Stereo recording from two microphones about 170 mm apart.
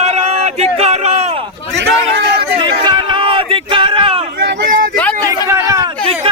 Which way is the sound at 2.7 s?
25° right (ahead or behind).